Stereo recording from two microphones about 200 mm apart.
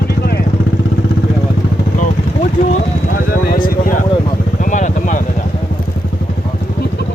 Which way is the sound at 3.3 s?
45° left (ahead or behind).